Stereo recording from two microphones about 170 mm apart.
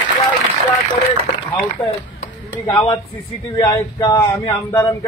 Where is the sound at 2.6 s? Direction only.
20° left (ahead or behind).